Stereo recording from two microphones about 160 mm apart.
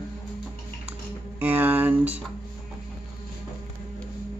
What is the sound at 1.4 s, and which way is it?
Speech, 10° right (ahead or behind).